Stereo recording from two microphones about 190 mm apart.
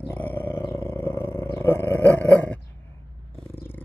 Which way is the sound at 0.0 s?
10° left (ahead or behind).